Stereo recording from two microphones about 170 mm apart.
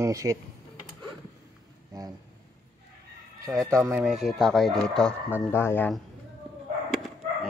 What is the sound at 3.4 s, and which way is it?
Speech, 15° right (ahead or behind).